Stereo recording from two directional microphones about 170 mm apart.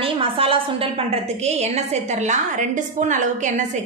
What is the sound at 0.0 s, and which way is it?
A woman's voice, 30° right (ahead or behind).